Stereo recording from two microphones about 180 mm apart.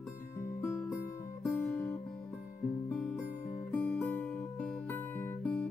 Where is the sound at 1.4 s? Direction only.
5° left (ahead or behind).